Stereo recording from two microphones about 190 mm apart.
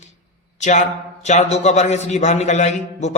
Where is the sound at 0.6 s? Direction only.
35° left (ahead or behind).